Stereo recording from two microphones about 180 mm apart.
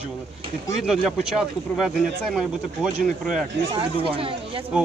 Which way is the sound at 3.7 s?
30° right (ahead or behind).